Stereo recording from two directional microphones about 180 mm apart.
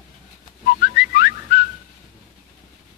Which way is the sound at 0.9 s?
55° left (ahead or behind).